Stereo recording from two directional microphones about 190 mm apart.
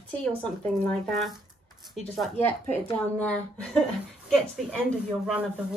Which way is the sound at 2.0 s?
Centre (ahead or behind).